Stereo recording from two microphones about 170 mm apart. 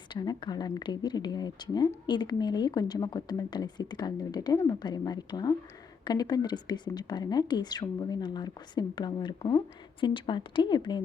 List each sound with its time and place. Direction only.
0.1 s speech: 25° left (ahead or behind)